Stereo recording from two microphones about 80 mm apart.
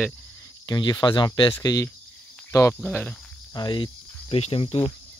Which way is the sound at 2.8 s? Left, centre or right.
Left.